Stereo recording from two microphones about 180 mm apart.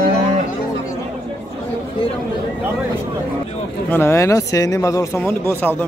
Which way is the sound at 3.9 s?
15° left (ahead or behind).